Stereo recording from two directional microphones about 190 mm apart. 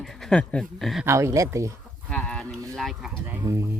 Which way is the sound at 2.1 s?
5° left (ahead or behind).